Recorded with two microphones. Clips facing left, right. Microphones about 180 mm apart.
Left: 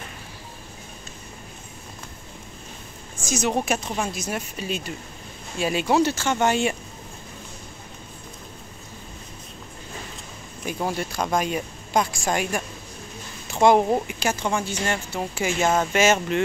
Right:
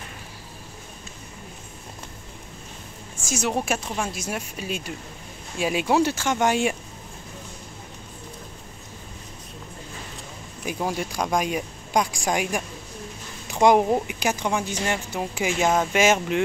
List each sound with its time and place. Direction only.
3.3 s speech: 5° right (ahead or behind)
4.1 s speech: 10° right (ahead or behind)
10.6 s speech: 5° right (ahead or behind)
15.6 s speech: centre (ahead or behind)
16.0 s speech: 10° right (ahead or behind)